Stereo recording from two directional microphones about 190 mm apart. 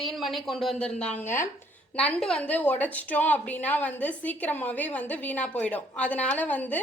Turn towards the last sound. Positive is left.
turn(degrees=10)  # may be behind; listen again after turning